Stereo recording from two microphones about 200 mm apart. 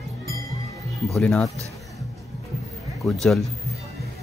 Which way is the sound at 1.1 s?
5° left (ahead or behind).